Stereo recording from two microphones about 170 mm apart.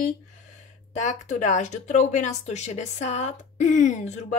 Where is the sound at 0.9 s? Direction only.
45° left (ahead or behind).